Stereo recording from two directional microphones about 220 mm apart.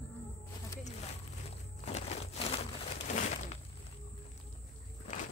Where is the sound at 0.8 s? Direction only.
30° left (ahead or behind).